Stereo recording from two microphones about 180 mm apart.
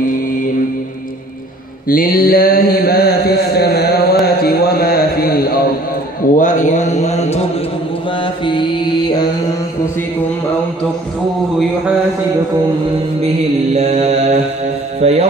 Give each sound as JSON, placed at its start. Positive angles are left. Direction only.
{"t": 1.9, "sound": "mantra", "side_deg": 50}
{"t": 6.3, "sound": "mantra", "side_deg": 45}
{"t": 13.7, "sound": "mantra", "side_deg": -35}